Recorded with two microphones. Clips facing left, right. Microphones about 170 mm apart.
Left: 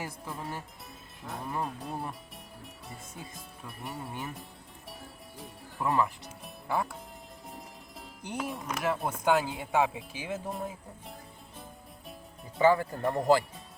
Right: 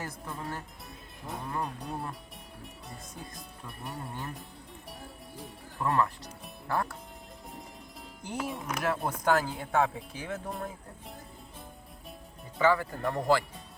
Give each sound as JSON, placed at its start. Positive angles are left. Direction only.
{"t": 0.0, "sound": "speech", "side_deg": 5}
{"t": 12.5, "sound": "speech", "side_deg": 20}